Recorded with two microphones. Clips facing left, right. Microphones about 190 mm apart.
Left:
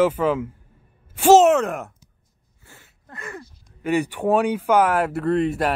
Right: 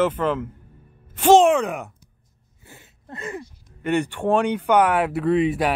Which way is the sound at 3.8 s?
5° left (ahead or behind).